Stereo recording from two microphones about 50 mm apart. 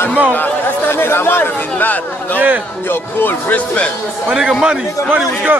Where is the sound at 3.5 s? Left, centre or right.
Left.